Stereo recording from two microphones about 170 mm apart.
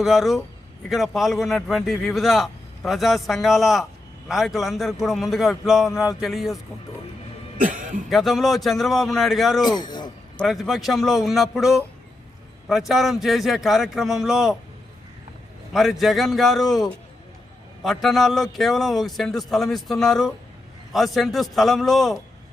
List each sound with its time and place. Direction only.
0.0 s a man's voice: centre (ahead or behind)
7.6 s a sound: 50° right (ahead or behind)
8.1 s a man's voice: centre (ahead or behind)
9.6 s speech: 25° left (ahead or behind)
10.3 s a man's voice: centre (ahead or behind)
15.7 s a man's voice: centre (ahead or behind)